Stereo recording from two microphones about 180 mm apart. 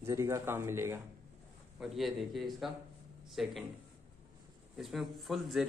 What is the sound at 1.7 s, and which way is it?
Speech, centre (ahead or behind).